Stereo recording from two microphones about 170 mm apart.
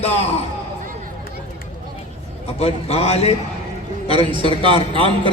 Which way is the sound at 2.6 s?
35° left (ahead or behind).